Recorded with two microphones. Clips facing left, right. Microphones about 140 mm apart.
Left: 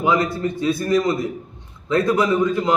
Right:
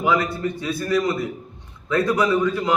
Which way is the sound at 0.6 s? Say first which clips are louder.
Left 4 dB; 20° left (ahead or behind).